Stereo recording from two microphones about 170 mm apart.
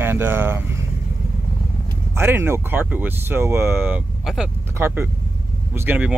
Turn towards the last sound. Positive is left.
turn(degrees=-10)  # may be behind; listen again after turning